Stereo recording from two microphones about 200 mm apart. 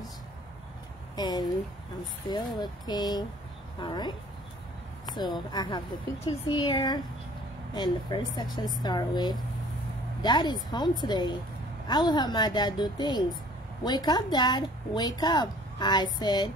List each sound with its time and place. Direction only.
1.1 s a woman's voice: 20° left (ahead or behind)